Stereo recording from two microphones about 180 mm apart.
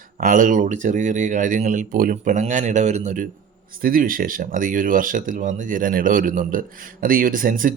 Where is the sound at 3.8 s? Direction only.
50° right (ahead or behind).